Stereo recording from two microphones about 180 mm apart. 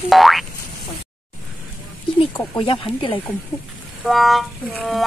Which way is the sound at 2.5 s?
30° left (ahead or behind).